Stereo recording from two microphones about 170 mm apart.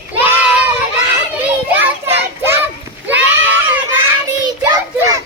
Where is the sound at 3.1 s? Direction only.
10° right (ahead or behind).